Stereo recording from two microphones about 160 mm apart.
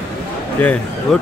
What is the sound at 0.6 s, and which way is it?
Speech, 10° left (ahead or behind).